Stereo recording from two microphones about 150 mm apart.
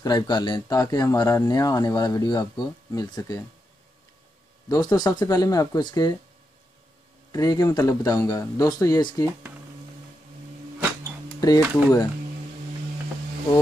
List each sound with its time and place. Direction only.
0.0 s speech: 30° left (ahead or behind)
4.6 s speech: 25° left (ahead or behind)
7.3 s speech: 25° left (ahead or behind)
11.4 s speech: 25° left (ahead or behind)